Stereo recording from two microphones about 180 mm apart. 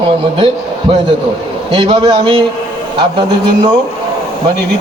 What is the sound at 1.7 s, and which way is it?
Speech, 25° right (ahead or behind).